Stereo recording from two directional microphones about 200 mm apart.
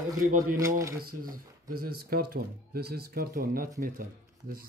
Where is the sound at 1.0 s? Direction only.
45° right (ahead or behind).